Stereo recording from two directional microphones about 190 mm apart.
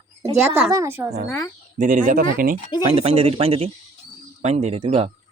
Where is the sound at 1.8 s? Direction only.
45° right (ahead or behind).